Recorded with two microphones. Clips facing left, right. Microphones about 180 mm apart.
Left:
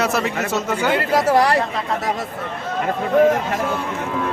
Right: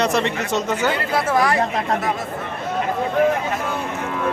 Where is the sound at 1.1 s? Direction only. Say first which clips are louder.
Left 4 dB; 40° left (ahead or behind).